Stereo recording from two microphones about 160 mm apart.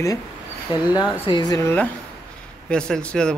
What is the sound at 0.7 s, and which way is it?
Speech, 25° left (ahead or behind).